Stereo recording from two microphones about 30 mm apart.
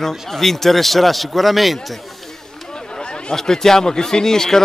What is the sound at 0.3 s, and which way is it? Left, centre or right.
A man's voice, centre.